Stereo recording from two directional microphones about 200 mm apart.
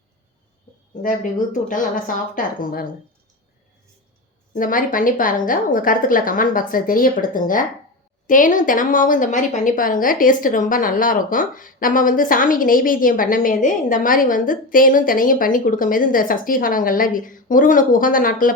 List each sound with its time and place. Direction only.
1.0 s speech: 40° left (ahead or behind)
4.5 s a woman's voice: 40° left (ahead or behind)